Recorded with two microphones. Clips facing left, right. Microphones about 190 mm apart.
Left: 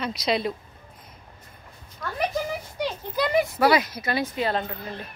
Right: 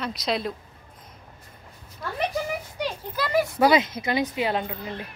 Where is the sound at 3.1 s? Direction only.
20° left (ahead or behind).